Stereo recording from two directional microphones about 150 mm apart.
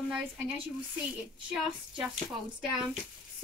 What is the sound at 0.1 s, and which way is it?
Speech, 5° right (ahead or behind).